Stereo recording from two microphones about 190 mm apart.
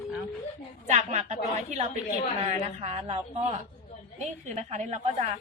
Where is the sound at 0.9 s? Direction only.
40° right (ahead or behind).